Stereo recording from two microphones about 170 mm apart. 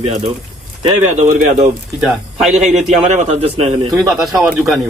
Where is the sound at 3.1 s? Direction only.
40° right (ahead or behind).